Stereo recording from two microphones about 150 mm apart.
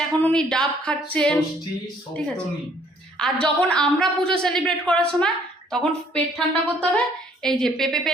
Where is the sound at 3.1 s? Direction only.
5° left (ahead or behind).